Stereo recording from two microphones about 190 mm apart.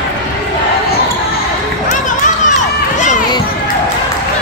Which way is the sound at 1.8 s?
40° left (ahead or behind).